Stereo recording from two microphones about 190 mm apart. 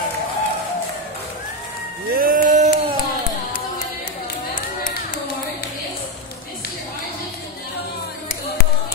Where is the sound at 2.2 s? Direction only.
50° right (ahead or behind).